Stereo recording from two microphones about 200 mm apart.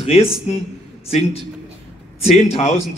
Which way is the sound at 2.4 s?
30° left (ahead or behind).